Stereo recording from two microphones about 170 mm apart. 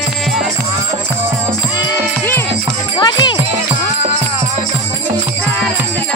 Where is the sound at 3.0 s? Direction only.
25° left (ahead or behind).